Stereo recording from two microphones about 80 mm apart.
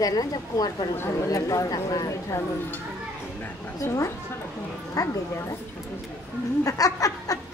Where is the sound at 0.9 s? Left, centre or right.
Left.